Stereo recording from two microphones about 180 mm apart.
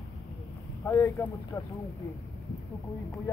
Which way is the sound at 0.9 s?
15° left (ahead or behind).